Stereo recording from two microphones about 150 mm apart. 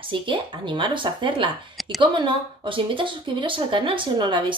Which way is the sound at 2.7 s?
35° right (ahead or behind).